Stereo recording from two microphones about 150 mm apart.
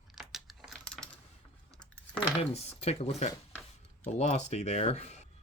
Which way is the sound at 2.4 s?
45° left (ahead or behind).